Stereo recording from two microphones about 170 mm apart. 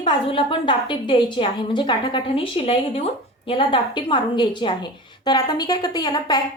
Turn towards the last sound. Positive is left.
turn(degrees=25)  # may be behind; listen again after turning